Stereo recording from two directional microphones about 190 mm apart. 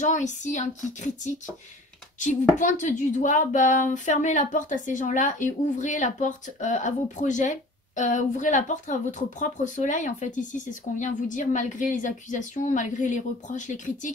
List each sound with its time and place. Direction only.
0.0 s speech: 40° left (ahead or behind)
2.6 s speech: 40° left (ahead or behind)